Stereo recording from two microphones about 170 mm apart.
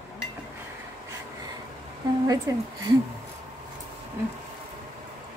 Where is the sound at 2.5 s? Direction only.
20° right (ahead or behind).